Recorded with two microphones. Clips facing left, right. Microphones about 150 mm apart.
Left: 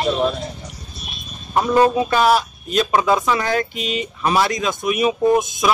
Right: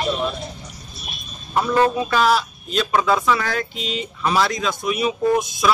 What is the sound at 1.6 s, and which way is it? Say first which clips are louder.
Speech: left 3 dB; 15° left (ahead or behind).